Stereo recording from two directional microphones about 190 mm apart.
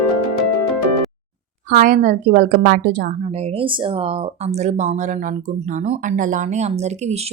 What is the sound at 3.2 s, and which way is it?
Speech, 35° right (ahead or behind).